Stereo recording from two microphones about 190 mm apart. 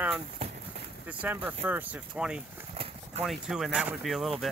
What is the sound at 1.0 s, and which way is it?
Speech, 10° right (ahead or behind).